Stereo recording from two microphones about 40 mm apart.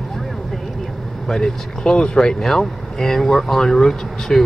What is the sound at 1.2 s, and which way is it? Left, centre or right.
Speech, centre.